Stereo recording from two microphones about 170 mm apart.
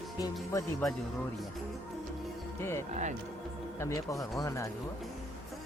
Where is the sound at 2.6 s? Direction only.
15° left (ahead or behind).